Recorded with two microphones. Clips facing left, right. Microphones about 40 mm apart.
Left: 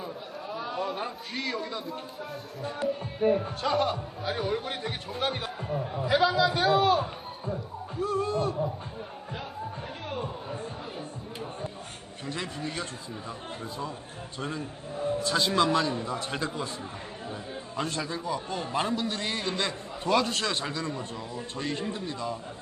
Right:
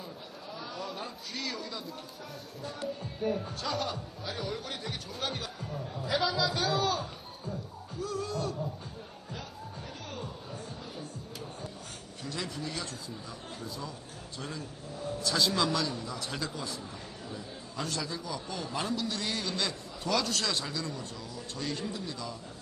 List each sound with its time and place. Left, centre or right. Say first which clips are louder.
0.5 s a man's voice: left 7 dB; left
10.1 s a sound: left 9 dB; left
12.2 s speech: left 3 dB; left
14.3 s speech: left 6 dB; left